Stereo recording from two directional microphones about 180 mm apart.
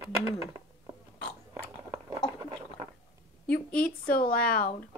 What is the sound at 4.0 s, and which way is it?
Speech, 55° left (ahead or behind).